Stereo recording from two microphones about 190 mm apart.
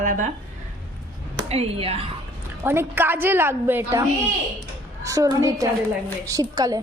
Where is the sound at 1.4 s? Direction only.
30° right (ahead or behind).